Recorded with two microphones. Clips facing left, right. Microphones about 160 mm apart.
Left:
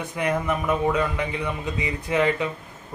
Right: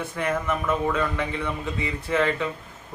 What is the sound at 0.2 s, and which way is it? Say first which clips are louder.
Speech: left 2 dB; 15° left (ahead or behind).